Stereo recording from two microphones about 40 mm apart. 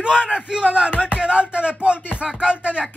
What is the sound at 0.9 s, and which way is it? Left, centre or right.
Music, left.